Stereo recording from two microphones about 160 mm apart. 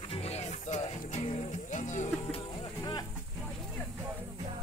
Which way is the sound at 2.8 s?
25° left (ahead or behind).